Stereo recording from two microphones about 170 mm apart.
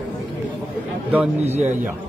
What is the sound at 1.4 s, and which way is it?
Speech, 40° right (ahead or behind).